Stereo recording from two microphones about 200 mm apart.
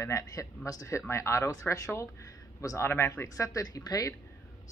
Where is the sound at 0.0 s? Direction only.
15° left (ahead or behind).